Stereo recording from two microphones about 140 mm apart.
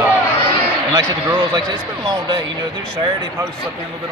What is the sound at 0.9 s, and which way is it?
A man's voice, 30° right (ahead or behind).